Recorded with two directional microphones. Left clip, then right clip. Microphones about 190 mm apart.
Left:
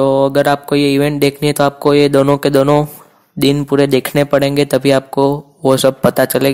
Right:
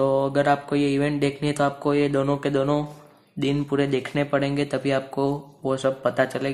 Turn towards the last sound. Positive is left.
turn(degrees=55)  # may be behind; listen again after turning